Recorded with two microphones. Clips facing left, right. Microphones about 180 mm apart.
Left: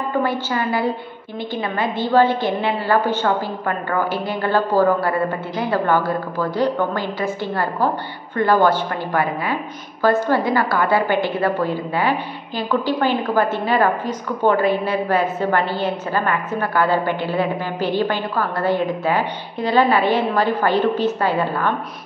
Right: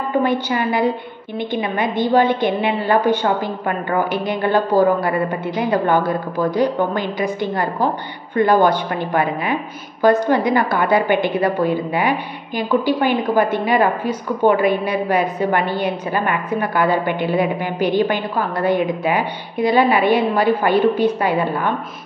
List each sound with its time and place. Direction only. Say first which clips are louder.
0.2 s a woman's voice: right 3 dB; 20° right (ahead or behind)